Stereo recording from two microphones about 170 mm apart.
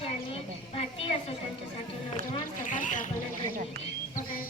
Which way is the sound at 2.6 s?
50° left (ahead or behind).